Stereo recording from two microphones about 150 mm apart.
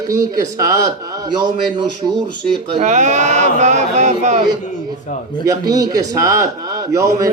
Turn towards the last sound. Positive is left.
turn(degrees=-20)  # may be behind; listen again after turning